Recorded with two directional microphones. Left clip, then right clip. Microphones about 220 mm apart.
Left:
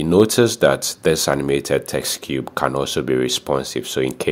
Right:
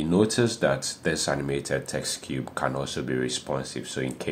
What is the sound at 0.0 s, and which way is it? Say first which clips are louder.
Speech: left 9 dB; 50° left (ahead or behind).